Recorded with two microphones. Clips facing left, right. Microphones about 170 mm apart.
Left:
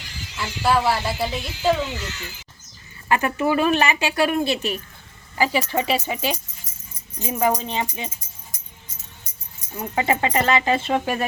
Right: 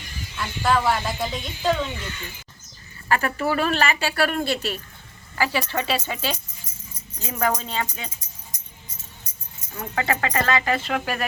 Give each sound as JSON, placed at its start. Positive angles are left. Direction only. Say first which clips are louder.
{"t": 0.0, "sound": "a sound", "louder": "right 1 dB", "side_deg": 85}
{"t": 0.6, "sound": "speech", "louder": "left 1 dB", "side_deg": 5}
{"t": 1.9, "sound": "speech", "louder": "left 2 dB", "side_deg": 85}
{"t": 3.1, "sound": "speech", "louder": "left 3 dB", "side_deg": 20}
{"t": 9.7, "sound": "speech", "louder": "left 3 dB", "side_deg": 20}